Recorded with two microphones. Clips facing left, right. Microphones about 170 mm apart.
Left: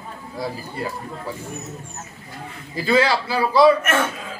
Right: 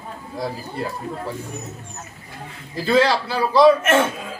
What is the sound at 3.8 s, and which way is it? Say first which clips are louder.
Speech: right 4 dB; 25° right (ahead or behind).